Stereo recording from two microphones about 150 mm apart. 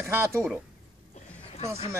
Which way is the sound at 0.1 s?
15° right (ahead or behind).